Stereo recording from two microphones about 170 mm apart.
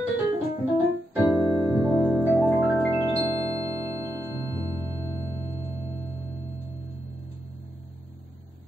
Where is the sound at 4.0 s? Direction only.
15° right (ahead or behind).